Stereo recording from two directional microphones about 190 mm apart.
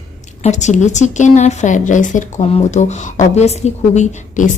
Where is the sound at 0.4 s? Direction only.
40° left (ahead or behind).